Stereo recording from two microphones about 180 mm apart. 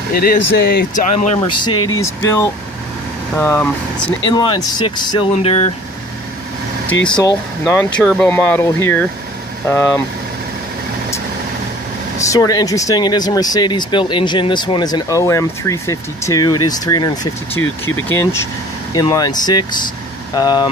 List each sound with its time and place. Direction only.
0.1 s speech: 55° left (ahead or behind)
1.0 s speech: 40° left (ahead or behind)
1.6 s speech: 20° left (ahead or behind)
4.3 s speech: 25° left (ahead or behind)
7.7 s speech: 10° left (ahead or behind)
12.3 s speech: 20° left (ahead or behind)